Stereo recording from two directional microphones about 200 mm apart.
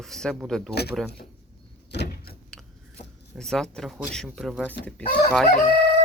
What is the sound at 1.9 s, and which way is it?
Vehicle, 55° left (ahead or behind).